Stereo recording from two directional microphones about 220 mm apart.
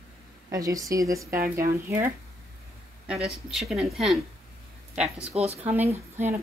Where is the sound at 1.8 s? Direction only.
10° right (ahead or behind).